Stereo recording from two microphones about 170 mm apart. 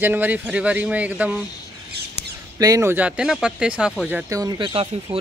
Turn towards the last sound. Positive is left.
turn(degrees=-25)  # may be behind; listen again after turning